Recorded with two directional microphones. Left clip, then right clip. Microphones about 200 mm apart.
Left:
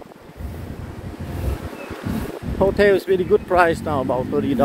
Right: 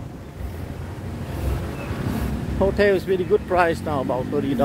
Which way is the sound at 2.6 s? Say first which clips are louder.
Left 3 dB; 20° left (ahead or behind).